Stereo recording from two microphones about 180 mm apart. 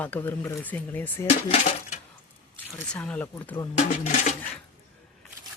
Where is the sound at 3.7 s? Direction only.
40° left (ahead or behind).